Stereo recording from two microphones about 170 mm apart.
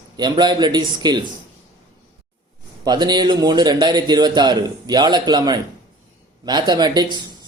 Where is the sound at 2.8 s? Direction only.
25° right (ahead or behind).